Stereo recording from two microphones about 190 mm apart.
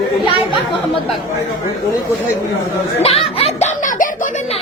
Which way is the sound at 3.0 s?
30° left (ahead or behind).